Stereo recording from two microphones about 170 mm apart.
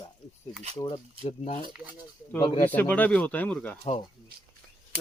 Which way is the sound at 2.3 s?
20° left (ahead or behind).